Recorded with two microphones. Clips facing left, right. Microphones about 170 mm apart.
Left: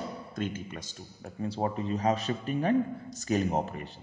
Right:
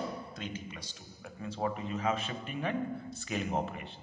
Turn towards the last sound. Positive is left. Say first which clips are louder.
# left 3 dB
turn(degrees=40)  # may be behind; listen again after turning